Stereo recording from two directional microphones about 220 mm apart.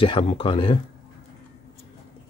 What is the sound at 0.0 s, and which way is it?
Speech, 25° left (ahead or behind).